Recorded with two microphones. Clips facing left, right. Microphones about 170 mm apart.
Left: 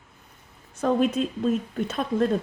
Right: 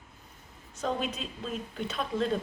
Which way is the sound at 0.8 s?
50° left (ahead or behind).